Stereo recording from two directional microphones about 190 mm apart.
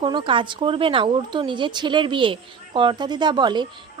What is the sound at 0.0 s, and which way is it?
Speech, 25° right (ahead or behind).